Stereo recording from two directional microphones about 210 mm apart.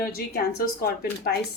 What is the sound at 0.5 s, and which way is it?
Speech, 45° left (ahead or behind).